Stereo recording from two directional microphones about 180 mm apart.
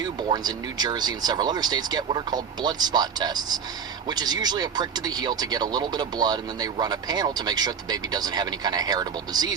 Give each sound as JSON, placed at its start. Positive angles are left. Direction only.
{"t": 0.0, "sound": "speech", "side_deg": -25}